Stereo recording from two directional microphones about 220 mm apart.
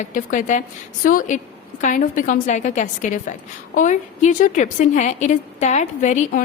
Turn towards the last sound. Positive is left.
turn(degrees=35)  # may be behind; listen again after turning